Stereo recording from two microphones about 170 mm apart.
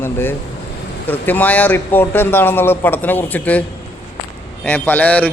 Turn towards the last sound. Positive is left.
turn(degrees=10)  # may be behind; listen again after turning